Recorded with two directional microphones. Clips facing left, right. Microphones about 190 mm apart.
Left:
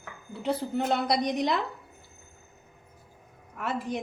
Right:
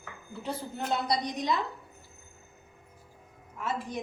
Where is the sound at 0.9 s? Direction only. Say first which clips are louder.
Left 2 dB; 70° left (ahead or behind).